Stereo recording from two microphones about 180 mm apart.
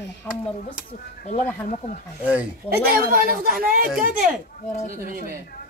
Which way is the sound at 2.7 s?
55° right (ahead or behind).